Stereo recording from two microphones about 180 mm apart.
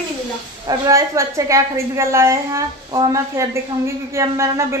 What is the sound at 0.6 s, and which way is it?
A woman's voice, 20° right (ahead or behind).